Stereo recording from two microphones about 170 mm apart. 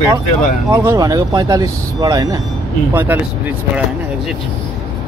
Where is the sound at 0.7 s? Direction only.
20° right (ahead or behind).